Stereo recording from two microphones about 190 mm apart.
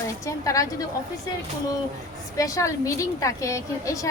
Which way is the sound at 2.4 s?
20° left (ahead or behind).